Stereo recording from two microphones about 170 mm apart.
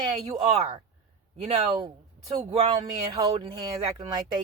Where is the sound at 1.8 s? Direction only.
20° right (ahead or behind).